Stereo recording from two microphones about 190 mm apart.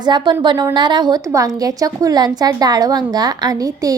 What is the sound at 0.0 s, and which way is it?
A woman's voice, 25° right (ahead or behind).